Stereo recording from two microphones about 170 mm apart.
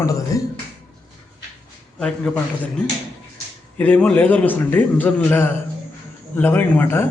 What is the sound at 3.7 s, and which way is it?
A man's voice, 10° left (ahead or behind).